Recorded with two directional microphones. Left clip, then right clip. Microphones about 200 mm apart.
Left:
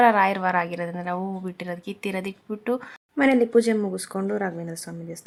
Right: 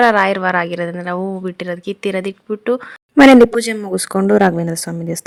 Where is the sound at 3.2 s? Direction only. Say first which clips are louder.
Right 11 dB; 55° right (ahead or behind).